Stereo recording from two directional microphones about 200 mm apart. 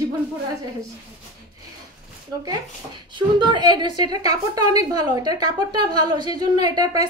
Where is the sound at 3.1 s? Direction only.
25° right (ahead or behind).